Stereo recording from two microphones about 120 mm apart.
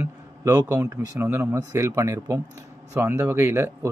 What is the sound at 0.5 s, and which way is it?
Speech, 30° right (ahead or behind).